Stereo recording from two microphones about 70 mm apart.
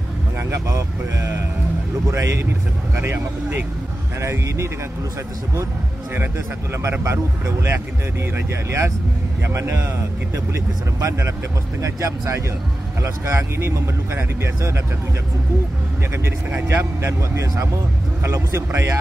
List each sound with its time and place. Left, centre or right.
0.5 s speech: right
3.0 s speech: right
4.2 s speech: right
6.1 s speech: right
16.3 s speech: right